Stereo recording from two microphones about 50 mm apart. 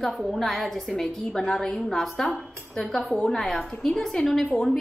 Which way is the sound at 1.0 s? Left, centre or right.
Centre.